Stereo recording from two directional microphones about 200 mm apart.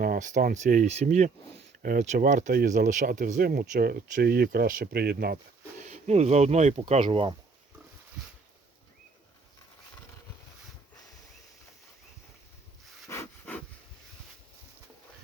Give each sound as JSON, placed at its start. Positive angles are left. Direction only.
{"t": 0.0, "sound": "speech", "side_deg": -45}
{"t": 5.9, "sound": "speech", "side_deg": -35}
{"t": 13.1, "sound": "a sound", "side_deg": 10}